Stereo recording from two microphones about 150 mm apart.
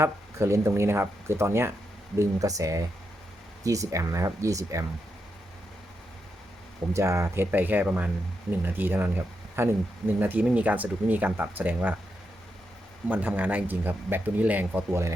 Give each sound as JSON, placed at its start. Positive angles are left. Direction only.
{"t": 0.0, "sound": "speech", "side_deg": -20}
{"t": 6.9, "sound": "speech", "side_deg": -20}
{"t": 13.1, "sound": "speech", "side_deg": -10}